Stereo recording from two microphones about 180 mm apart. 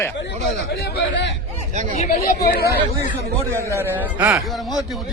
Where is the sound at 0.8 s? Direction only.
70° left (ahead or behind).